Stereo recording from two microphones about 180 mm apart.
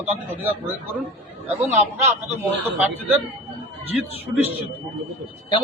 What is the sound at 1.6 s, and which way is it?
Speech, 35° right (ahead or behind).